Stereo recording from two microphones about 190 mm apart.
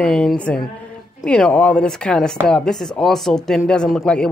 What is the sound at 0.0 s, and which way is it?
A woman's voice, 5° left (ahead or behind).